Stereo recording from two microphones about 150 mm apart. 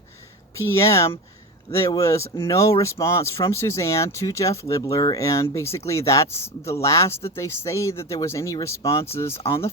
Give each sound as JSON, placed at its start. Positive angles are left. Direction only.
{"t": 0.5, "sound": "speech", "side_deg": 20}